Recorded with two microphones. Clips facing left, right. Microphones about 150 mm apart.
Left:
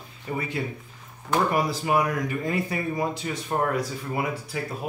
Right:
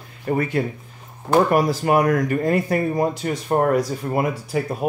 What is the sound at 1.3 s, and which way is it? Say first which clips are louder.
Speech: right 7 dB; 45° right (ahead or behind).